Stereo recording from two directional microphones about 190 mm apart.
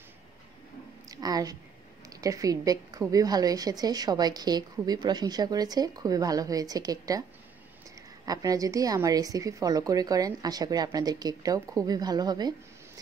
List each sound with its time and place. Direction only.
1.0 s a sound: 20° right (ahead or behind)
2.0 s a woman's voice: 15° right (ahead or behind)
8.3 s a woman's voice: 20° right (ahead or behind)